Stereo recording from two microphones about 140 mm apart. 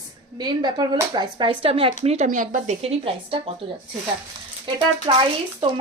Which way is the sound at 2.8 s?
45° right (ahead or behind).